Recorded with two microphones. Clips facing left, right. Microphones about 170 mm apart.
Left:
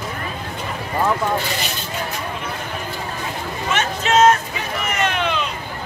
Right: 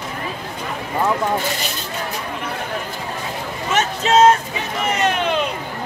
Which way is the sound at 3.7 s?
40° right (ahead or behind).